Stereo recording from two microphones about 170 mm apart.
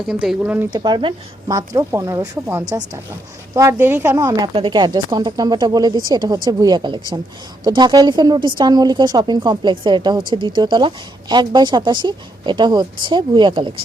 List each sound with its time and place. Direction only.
0.1 s speech: 5° right (ahead or behind)
0.7 s a woman's voice: 25° right (ahead or behind)